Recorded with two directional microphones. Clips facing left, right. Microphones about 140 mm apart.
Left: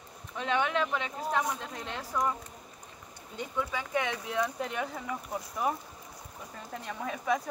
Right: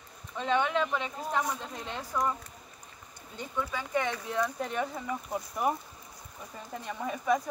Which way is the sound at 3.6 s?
5° left (ahead or behind).